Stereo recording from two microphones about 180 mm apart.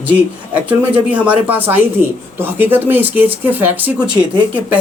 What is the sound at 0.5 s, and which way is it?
Speech, 10° right (ahead or behind).